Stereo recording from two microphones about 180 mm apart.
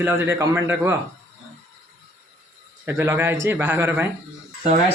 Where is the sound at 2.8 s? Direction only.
10° right (ahead or behind).